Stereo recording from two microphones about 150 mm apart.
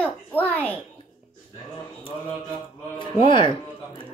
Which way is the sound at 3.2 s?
35° left (ahead or behind).